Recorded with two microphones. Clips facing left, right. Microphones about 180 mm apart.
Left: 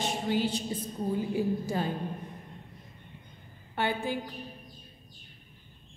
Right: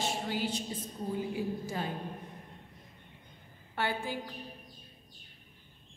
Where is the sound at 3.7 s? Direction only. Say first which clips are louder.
Left 4 dB; 20° left (ahead or behind).